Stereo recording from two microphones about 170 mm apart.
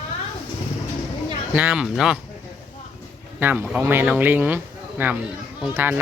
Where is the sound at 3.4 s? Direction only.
10° right (ahead or behind).